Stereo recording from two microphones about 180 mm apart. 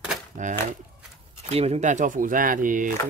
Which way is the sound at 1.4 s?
35° right (ahead or behind).